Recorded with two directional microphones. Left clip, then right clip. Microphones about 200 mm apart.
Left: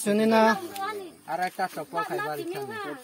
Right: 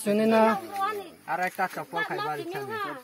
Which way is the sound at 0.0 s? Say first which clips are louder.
Left 1 dB; 10° left (ahead or behind).